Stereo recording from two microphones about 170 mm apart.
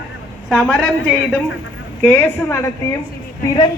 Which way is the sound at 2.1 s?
10° left (ahead or behind).